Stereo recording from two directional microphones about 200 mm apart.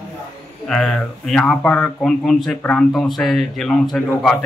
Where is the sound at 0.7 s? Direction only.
Centre (ahead or behind).